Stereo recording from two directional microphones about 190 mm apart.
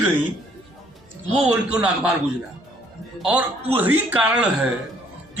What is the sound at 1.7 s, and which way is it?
Speech, 5° right (ahead or behind).